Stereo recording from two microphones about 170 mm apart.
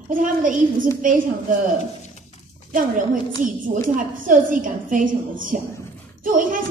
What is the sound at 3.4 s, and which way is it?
A woman's voice, 50° right (ahead or behind).